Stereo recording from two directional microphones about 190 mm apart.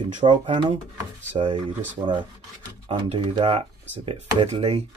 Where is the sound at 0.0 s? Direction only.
25° right (ahead or behind).